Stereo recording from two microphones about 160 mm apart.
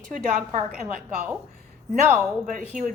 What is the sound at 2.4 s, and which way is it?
Speech, 55° right (ahead or behind).